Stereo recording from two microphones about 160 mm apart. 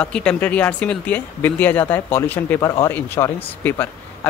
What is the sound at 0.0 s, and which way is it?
A man's voice, 5° left (ahead or behind).